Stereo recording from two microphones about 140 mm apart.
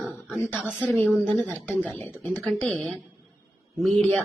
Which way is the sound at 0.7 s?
10° left (ahead or behind).